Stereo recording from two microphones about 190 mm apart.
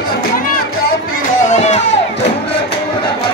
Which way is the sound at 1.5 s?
35° left (ahead or behind).